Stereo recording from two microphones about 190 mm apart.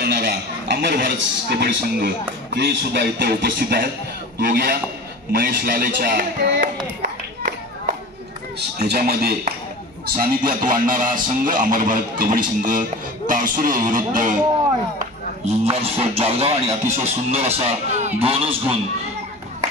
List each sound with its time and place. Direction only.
0.0 s a man's voice: 65° right (ahead or behind)
8.5 s speech: 55° right (ahead or behind)
15.0 s speech: 35° right (ahead or behind)